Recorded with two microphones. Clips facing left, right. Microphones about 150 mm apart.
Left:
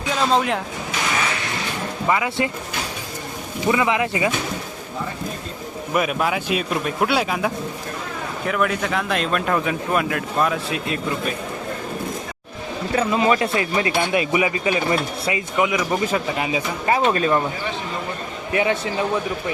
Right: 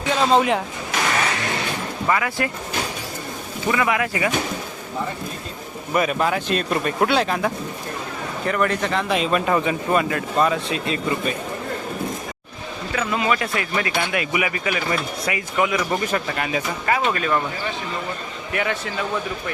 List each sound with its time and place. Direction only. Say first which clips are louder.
0.1 s speech: right 2 dB; centre (ahead or behind)
2.0 s speech: left 1 dB; 20° left (ahead or behind)
3.7 s speech: left 2 dB; 20° left (ahead or behind)
5.9 s speech: right 1 dB; 5° left (ahead or behind)
12.9 s speech: left 4 dB; 30° left (ahead or behind)
16.9 s speech: left 3 dB; 25° left (ahead or behind)
18.5 s speech: left 4 dB; 25° left (ahead or behind)